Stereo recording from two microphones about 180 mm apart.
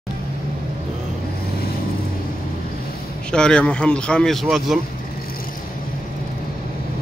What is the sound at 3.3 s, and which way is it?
Speech, 5° left (ahead or behind).